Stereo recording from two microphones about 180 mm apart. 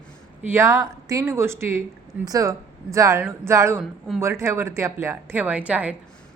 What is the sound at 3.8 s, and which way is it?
Speech, centre (ahead or behind).